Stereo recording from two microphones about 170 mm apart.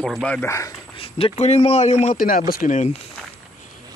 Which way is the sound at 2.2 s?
60° left (ahead or behind).